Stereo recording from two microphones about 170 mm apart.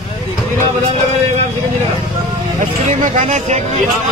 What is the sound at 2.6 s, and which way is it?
Speech, 50° right (ahead or behind).